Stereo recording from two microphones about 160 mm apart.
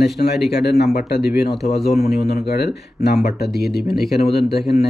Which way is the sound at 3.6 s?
85° left.